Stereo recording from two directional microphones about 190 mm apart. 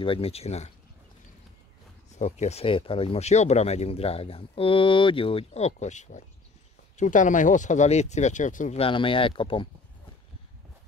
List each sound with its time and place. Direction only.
0.0 s speech: 30° left (ahead or behind)
2.1 s speech: 35° left (ahead or behind)